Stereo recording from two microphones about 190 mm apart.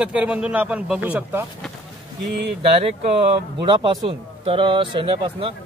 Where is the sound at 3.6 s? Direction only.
25° right (ahead or behind).